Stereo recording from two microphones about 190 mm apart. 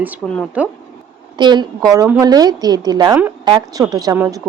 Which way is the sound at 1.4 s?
25° right (ahead or behind).